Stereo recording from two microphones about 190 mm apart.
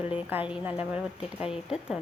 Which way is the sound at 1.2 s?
30° left (ahead or behind).